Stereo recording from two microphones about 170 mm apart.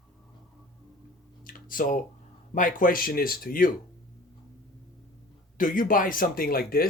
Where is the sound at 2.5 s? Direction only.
50° left (ahead or behind).